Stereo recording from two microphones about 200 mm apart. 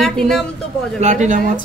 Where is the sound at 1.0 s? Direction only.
35° right (ahead or behind).